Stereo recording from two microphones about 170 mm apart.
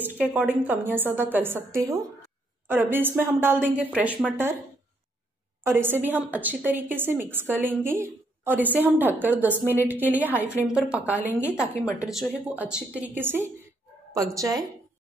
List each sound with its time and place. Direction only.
0.0 s a woman's voice: 10° right (ahead or behind)
5.8 s a woman's voice: 10° right (ahead or behind)